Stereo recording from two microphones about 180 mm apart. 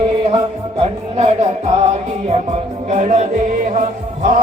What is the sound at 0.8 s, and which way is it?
Speech, 35° right (ahead or behind).